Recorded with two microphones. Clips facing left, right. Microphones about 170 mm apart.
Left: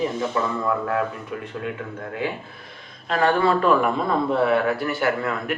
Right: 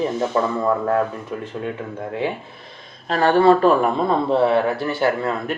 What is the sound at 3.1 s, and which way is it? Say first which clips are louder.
A man's voice: right 5 dB; 30° right (ahead or behind).